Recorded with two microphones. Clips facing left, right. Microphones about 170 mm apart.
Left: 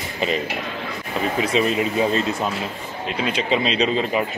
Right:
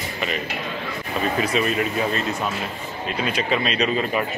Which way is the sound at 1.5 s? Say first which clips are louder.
Left 2 dB; 25° left (ahead or behind).